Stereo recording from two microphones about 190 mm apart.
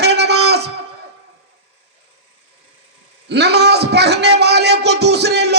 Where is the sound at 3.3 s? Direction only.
60° right (ahead or behind).